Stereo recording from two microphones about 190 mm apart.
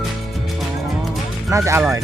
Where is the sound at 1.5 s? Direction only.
15° right (ahead or behind).